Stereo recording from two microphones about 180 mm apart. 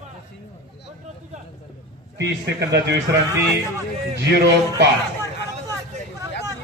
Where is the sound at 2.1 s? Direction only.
70° right (ahead or behind).